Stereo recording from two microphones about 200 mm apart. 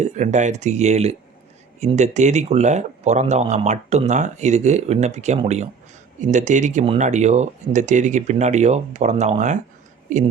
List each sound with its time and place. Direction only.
0.0 s speech: 35° right (ahead or behind)